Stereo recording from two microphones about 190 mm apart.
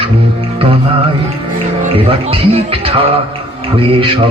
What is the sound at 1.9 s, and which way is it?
Speech, 30° right (ahead or behind).